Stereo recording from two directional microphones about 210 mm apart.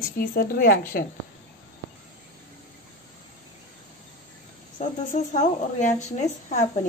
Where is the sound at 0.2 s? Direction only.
45° left (ahead or behind).